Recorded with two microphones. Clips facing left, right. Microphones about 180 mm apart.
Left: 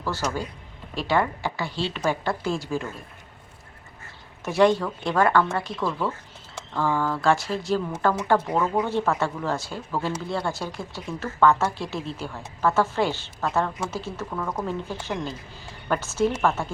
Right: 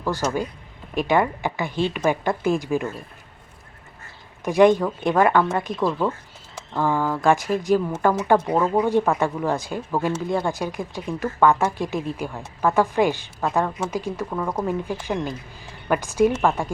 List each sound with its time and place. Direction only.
0.0 s speech: 15° right (ahead or behind)
4.4 s speech: 15° right (ahead or behind)